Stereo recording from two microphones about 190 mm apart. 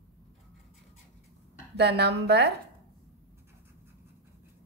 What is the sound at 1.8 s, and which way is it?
Speech, 60° right (ahead or behind).